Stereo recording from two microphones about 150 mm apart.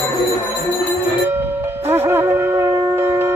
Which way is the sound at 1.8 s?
15° right (ahead or behind).